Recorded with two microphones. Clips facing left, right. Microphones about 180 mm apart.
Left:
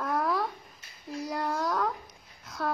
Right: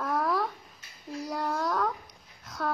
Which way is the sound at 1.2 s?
Centre (ahead or behind).